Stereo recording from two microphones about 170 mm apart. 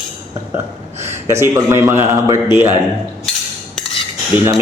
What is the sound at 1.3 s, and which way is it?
A man's voice, 15° right (ahead or behind).